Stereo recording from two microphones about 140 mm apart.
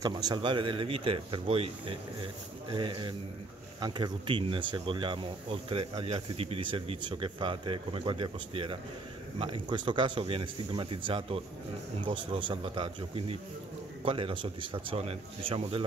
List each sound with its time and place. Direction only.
0.0 s speech: 30° right (ahead or behind)